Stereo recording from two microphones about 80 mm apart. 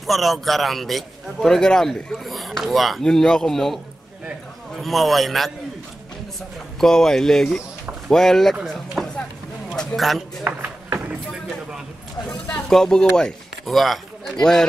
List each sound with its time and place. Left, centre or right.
0.0 s a man's voice: centre
6.8 s a man's voice: centre
10.4 s run: right
12.6 s speech: centre